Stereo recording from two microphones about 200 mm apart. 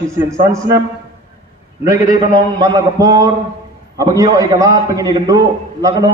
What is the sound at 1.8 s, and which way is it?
A man's voice, 15° right (ahead or behind).